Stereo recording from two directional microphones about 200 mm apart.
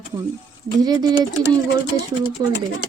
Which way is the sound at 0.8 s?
20° right (ahead or behind).